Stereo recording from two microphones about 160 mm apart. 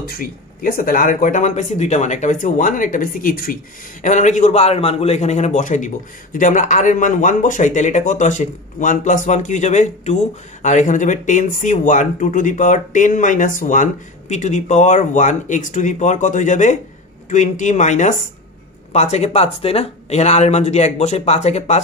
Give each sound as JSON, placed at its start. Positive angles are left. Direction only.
{"t": 0.0, "sound": "speech", "side_deg": 70}
{"t": 4.0, "sound": "a man's voice", "side_deg": 50}